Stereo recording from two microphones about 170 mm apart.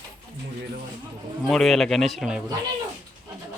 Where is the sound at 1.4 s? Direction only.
Centre (ahead or behind).